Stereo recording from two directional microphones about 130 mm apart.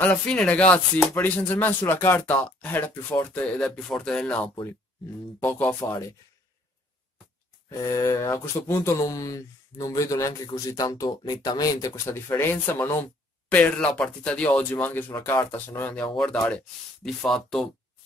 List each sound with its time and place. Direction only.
0.0 s speech: 10° left (ahead or behind)
7.8 s speech: 25° left (ahead or behind); by 17.6 s 5° left (ahead or behind)